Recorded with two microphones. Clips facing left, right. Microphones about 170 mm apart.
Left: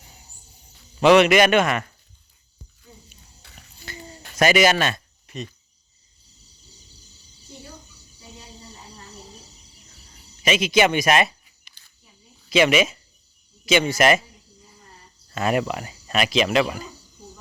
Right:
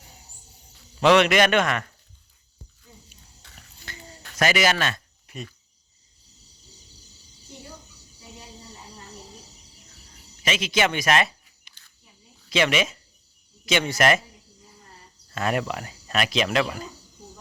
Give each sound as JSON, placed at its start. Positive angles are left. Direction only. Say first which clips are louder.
{"t": 0.9, "sound": "speech", "louder": "left 3 dB", "side_deg": 5}
{"t": 3.8, "sound": "a sound", "louder": "left 5 dB", "side_deg": 15}
{"t": 5.2, "sound": "cricket", "louder": "left 4 dB", "side_deg": -10}
{"t": 10.4, "sound": "speech", "louder": "left 5 dB", "side_deg": 15}
{"t": 12.5, "sound": "speech", "louder": "left 5 dB", "side_deg": 10}
{"t": 15.4, "sound": "speech", "louder": "left 3 dB", "side_deg": 5}